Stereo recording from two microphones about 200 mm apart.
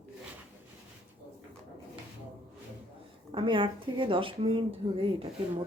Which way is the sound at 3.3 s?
25° right (ahead or behind).